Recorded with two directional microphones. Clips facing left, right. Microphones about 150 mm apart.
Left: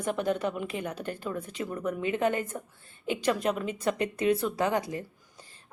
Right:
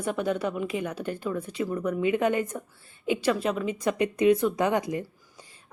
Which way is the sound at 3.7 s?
10° right (ahead or behind).